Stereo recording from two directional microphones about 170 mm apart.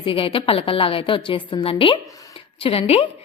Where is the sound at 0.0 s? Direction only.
30° left (ahead or behind).